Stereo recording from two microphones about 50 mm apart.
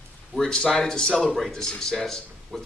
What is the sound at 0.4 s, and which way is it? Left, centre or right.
A man's voice, centre.